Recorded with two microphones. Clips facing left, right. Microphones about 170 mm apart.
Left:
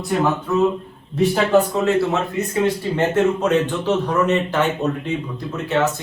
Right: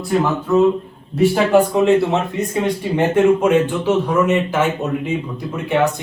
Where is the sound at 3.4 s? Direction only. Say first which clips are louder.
Right 3 dB; 10° right (ahead or behind).